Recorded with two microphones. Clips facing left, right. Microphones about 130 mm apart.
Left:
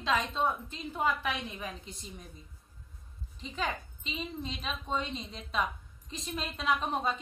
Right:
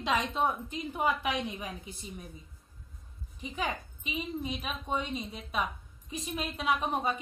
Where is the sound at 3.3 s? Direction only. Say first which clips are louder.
Right 1 dB; 15° right (ahead or behind).